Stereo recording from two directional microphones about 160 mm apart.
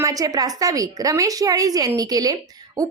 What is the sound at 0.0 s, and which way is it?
A woman's voice, 20° right (ahead or behind).